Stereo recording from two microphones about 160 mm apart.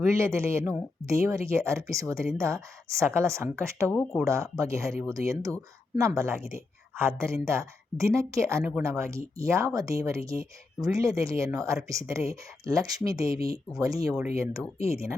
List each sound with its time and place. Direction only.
0.1 s speech: 15° right (ahead or behind)
3.8 s speech: 10° left (ahead or behind)
4.3 s speech: 20° right (ahead or behind)